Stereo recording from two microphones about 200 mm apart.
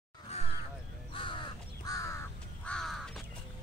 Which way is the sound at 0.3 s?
35° left (ahead or behind).